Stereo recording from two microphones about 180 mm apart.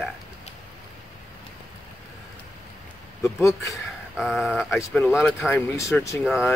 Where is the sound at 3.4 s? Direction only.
15° left (ahead or behind).